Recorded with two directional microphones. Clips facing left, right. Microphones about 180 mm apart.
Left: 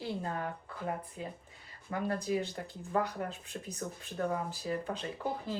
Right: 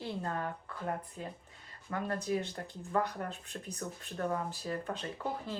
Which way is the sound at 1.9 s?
15° left (ahead or behind).